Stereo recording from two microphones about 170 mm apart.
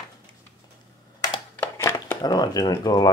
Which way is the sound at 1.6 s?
15° left (ahead or behind).